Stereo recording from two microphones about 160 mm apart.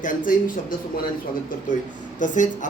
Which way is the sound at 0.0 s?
55° left (ahead or behind).